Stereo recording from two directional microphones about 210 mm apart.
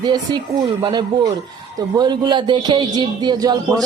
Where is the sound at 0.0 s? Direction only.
20° right (ahead or behind).